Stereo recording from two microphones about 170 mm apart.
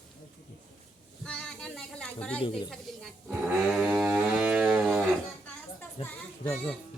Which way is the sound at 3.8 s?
5° right (ahead or behind).